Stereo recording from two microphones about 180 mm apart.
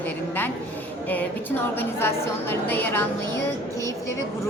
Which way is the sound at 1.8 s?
10° left (ahead or behind).